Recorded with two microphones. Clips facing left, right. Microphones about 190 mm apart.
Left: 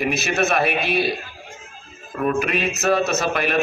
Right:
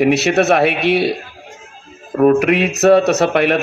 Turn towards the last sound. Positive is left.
turn(degrees=-70)  # may be behind; listen again after turning